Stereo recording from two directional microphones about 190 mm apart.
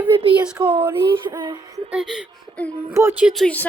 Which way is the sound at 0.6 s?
25° right (ahead or behind).